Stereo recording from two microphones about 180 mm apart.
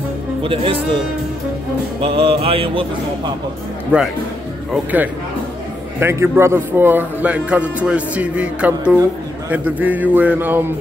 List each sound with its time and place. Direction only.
0.4 s speech: 30° right (ahead or behind)
2.0 s music: 30° right (ahead or behind)
3.9 s a man's voice: 5° right (ahead or behind)
5.9 s a man's voice: 15° right (ahead or behind)